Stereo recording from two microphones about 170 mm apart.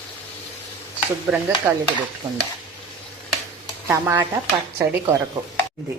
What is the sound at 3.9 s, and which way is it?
Speech, 15° right (ahead or behind).